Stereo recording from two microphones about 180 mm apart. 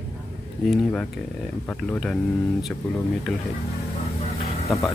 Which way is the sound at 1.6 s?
5° left (ahead or behind).